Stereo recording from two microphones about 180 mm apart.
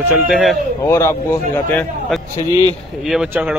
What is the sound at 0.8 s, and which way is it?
Speech, 15° left (ahead or behind).